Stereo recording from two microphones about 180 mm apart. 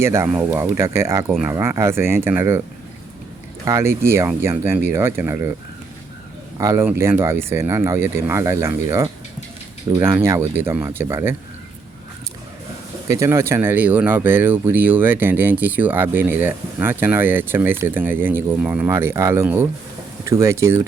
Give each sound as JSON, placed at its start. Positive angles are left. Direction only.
{"t": 0.0, "sound": "speech", "side_deg": -15}
{"t": 3.7, "sound": "speech", "side_deg": -15}
{"t": 6.6, "sound": "speech", "side_deg": -15}
{"t": 13.1, "sound": "speech", "side_deg": -15}